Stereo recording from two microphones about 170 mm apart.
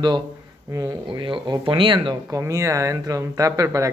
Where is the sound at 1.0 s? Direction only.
30° right (ahead or behind).